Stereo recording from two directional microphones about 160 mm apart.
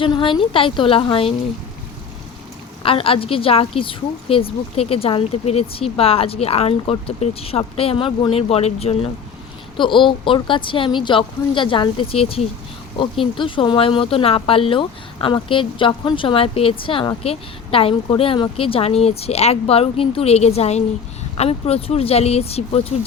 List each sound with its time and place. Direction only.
0.0 s a woman's voice: 35° left (ahead or behind)
2.8 s a woman's voice: 35° left (ahead or behind)